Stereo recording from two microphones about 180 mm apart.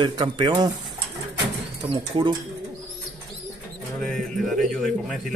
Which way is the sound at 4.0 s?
5° left (ahead or behind).